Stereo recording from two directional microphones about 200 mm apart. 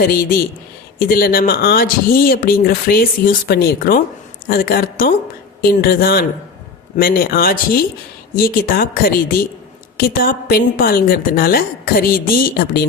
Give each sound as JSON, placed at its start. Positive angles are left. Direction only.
{"t": 0.0, "sound": "speech", "side_deg": 50}